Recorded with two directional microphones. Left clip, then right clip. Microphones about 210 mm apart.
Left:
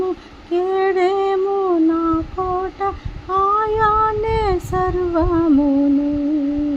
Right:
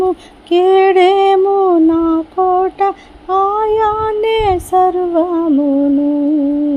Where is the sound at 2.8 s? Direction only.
25° right (ahead or behind).